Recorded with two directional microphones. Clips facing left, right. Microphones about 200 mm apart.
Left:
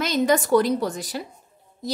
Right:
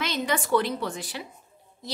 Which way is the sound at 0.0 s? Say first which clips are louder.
Left 7 dB; 40° left (ahead or behind).